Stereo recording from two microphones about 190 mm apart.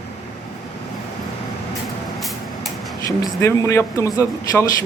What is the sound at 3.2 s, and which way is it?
A man's voice, 15° left (ahead or behind).